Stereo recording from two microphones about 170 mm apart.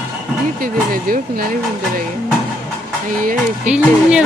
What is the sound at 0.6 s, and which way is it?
Speech, 60° right (ahead or behind).